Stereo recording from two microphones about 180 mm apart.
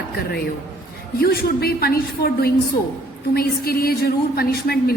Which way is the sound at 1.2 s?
55° left (ahead or behind).